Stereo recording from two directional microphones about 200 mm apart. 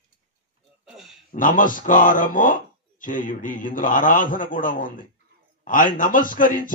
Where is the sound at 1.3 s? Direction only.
40° left (ahead or behind).